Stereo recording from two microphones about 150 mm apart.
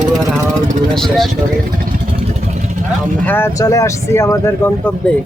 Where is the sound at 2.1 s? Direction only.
45° right (ahead or behind).